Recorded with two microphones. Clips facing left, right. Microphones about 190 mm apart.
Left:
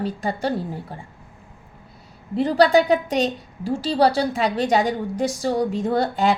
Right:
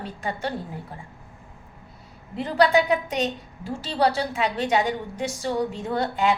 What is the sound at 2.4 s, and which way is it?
A woman's voice, 35° left (ahead or behind).